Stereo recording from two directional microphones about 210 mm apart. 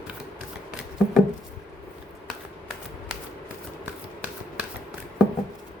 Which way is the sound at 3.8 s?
5° right (ahead or behind).